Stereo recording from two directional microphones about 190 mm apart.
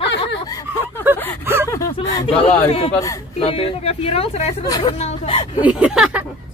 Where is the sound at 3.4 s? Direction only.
30° left (ahead or behind).